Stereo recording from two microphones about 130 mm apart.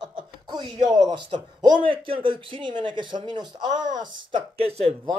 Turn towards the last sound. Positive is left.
turn(degrees=-50)  # may be behind; listen again after turning